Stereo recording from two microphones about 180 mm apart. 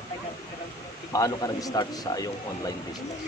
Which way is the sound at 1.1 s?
20° left (ahead or behind).